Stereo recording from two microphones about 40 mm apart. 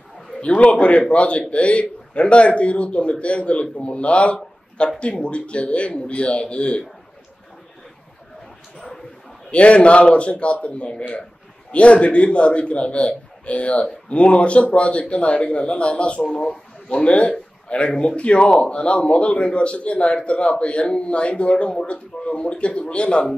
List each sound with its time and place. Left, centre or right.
0.5 s a man's voice: left
8.7 s a sound: centre
9.5 s a man's voice: left
16.3 s a man's voice: centre